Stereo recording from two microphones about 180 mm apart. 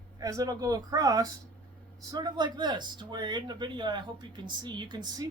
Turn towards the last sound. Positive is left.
turn(degrees=-25)  # may be behind; listen again after turning